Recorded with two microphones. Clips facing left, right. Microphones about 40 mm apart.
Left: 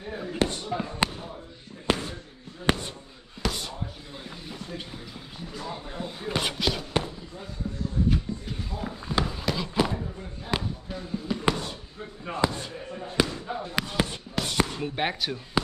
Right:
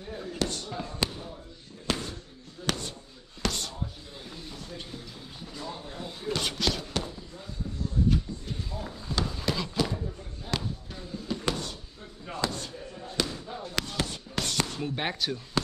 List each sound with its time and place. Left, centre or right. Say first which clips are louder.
0.1 s basketball bounce: left 4 dB; left
1.9 s slam: left 5 dB; left
2.6 s basketball bounce: left 6 dB; left
3.4 s basketball bounce: left 1 dB; centre
4.5 s a sound: left 5 dB; centre
9.4 s a sound: left 1 dB; centre
9.8 s basketball bounce: left 4 dB; left
13.5 s fireworks: left 4 dB; centre
14.5 s basketball bounce: left 5 dB; centre